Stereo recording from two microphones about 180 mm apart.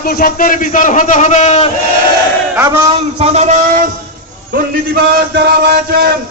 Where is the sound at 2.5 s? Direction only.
15° right (ahead or behind).